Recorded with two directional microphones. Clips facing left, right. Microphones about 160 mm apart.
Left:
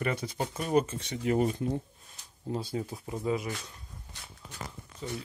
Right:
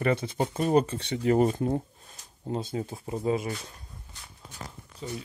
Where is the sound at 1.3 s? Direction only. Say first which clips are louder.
Right 4 dB; 50° right (ahead or behind).